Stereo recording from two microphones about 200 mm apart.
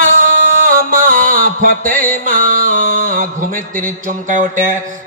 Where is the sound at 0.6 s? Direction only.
45° right (ahead or behind).